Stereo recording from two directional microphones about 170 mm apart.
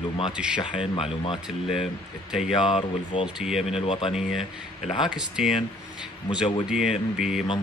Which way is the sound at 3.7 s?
30° left (ahead or behind).